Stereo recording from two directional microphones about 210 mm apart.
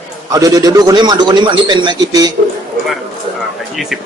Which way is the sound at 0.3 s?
15° right (ahead or behind).